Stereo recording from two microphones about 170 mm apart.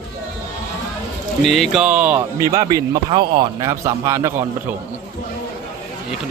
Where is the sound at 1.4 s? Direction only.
Centre (ahead or behind); by 4.4 s 15° right (ahead or behind).